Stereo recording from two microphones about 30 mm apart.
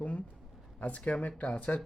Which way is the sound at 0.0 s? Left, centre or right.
Left.